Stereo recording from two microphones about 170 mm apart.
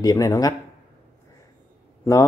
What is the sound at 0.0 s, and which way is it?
Speech, 20° left (ahead or behind).